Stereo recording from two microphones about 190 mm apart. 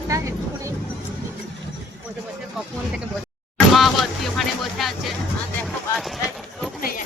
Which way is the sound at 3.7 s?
Centre (ahead or behind).